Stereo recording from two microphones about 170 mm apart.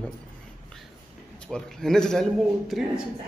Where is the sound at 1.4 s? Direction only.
5° left (ahead or behind).